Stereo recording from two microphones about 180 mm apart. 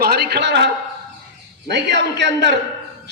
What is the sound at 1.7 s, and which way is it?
Speech, 70° right (ahead or behind).